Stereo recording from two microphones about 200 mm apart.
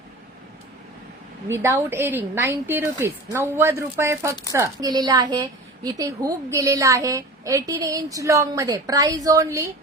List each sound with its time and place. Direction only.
1.5 s a woman's voice: 10° right (ahead or behind)